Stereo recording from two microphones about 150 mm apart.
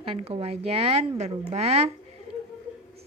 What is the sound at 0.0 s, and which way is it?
A woman's voice, 40° right (ahead or behind).